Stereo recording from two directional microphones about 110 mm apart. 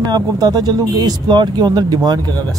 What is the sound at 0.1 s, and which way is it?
Speech, 35° right (ahead or behind).